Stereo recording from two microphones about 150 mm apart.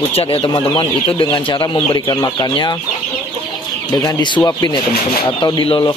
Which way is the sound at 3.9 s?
25° left (ahead or behind).